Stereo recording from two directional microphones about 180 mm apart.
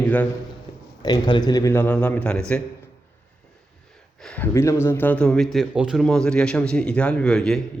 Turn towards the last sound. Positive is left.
turn(degrees=5)  # may be behind; listen again after turning